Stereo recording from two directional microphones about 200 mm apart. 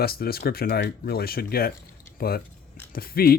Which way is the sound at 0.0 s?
50° left (ahead or behind).